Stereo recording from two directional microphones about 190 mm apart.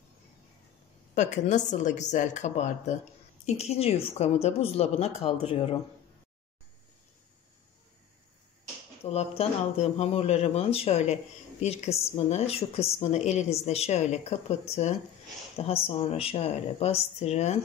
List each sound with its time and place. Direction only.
1.1 s a woman's voice: 40° left (ahead or behind)
9.0 s a woman's voice: 35° left (ahead or behind)
15.5 s a woman's voice: 30° left (ahead or behind)